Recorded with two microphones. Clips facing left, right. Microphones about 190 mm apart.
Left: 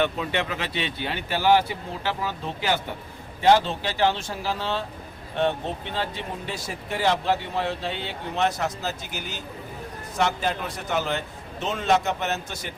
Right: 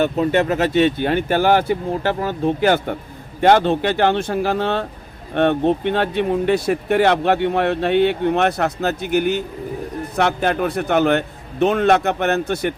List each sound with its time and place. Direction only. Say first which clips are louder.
0.0 s speech: right 8 dB; 45° right (ahead or behind)